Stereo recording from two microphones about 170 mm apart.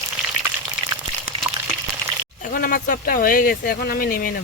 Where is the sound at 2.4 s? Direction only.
60° left (ahead or behind).